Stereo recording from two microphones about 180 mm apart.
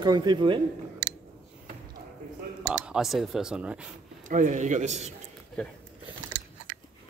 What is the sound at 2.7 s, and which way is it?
Speech, centre (ahead or behind).